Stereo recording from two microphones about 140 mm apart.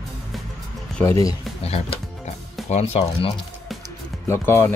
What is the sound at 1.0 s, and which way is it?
Speech, 20° left (ahead or behind).